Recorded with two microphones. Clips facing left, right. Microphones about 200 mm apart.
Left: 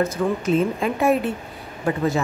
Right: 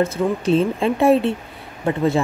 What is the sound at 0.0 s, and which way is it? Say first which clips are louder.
Speech: right 2 dB; 30° right (ahead or behind).